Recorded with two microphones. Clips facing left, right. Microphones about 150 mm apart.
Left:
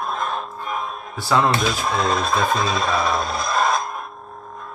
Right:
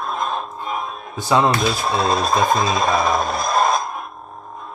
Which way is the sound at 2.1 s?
35° right (ahead or behind).